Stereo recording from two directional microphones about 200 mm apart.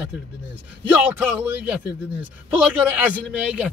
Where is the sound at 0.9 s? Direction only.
10° right (ahead or behind).